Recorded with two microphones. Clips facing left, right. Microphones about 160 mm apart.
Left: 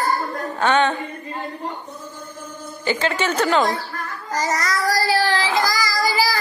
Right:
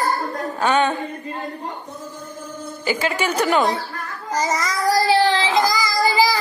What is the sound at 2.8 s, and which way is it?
Speech, 10° right (ahead or behind).